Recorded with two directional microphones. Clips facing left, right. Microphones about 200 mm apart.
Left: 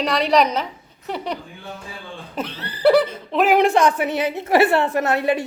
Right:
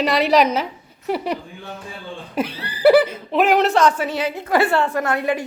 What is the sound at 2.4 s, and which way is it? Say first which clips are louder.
Speech: right 3 dB; 10° right (ahead or behind).